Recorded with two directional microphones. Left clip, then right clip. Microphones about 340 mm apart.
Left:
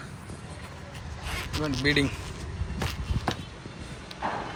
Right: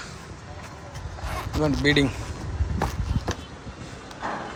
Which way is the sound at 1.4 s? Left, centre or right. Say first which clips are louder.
Right 5 dB; centre.